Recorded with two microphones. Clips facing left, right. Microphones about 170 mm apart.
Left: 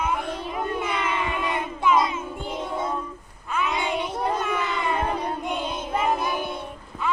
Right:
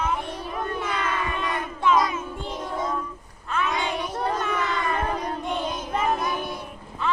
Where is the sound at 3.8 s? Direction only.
25° left (ahead or behind).